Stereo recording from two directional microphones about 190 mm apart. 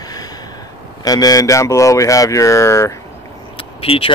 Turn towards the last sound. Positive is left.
turn(degrees=30)  # may be behind; listen again after turning